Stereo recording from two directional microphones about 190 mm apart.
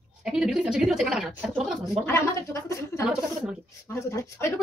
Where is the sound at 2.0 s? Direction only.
15° left (ahead or behind).